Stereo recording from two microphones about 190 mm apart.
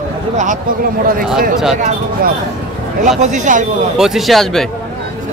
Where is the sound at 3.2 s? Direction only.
40° right (ahead or behind).